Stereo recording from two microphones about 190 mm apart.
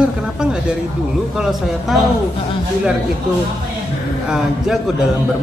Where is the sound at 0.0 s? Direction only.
5° right (ahead or behind).